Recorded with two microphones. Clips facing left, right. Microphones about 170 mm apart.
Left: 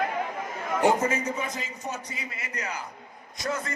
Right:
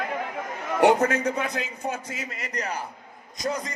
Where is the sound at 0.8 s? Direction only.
70° right (ahead or behind); by 2.8 s 35° right (ahead or behind).